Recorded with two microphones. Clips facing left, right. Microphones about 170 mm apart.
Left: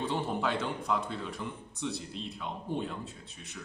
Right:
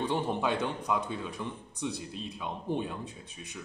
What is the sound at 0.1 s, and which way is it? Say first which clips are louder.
A man's voice: right 2 dB; 15° right (ahead or behind).